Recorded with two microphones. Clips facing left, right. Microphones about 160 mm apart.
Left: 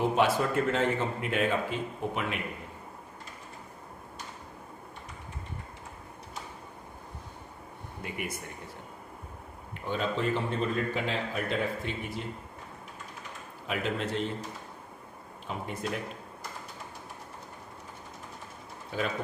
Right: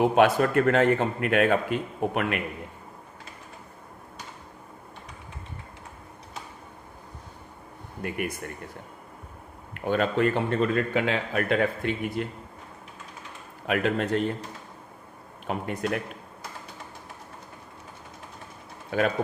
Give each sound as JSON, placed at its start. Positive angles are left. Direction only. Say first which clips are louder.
{"t": 0.0, "sound": "a man's voice", "louder": "right 6 dB", "side_deg": -65}
{"t": 8.0, "sound": "a man's voice", "louder": "right 7 dB", "side_deg": -55}
{"t": 9.8, "sound": "a man's voice", "louder": "right 7 dB", "side_deg": -60}
{"t": 13.7, "sound": "a man's voice", "louder": "right 7 dB", "side_deg": -60}
{"t": 15.5, "sound": "a man's voice", "louder": "right 6 dB", "side_deg": -60}
{"t": 18.9, "sound": "speech", "louder": "right 7 dB", "side_deg": -60}